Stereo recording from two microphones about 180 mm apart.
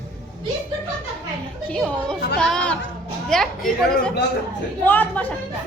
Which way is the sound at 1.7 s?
5° left (ahead or behind).